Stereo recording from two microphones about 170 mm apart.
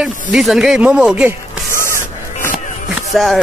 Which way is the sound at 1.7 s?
15° left (ahead or behind).